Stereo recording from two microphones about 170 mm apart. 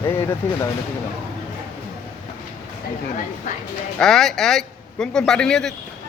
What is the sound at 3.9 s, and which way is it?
Speech, 5° left (ahead or behind).